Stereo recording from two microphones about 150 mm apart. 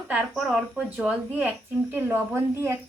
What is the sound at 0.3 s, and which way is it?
A woman's voice, centre (ahead or behind).